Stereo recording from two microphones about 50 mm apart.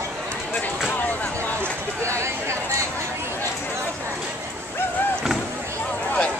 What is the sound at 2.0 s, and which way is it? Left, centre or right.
Chatter, right.